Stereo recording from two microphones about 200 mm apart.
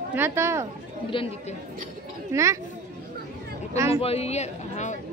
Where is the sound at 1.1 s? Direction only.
25° left (ahead or behind).